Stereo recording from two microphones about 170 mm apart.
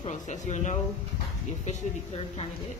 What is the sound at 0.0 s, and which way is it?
Speech, 45° left (ahead or behind).